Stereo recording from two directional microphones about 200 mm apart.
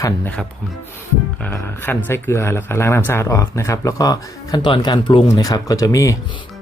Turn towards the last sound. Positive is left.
turn(degrees=15)  # may be behind; listen again after turning